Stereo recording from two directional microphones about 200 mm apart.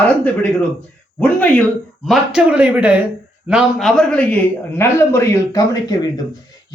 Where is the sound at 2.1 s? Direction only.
5° right (ahead or behind).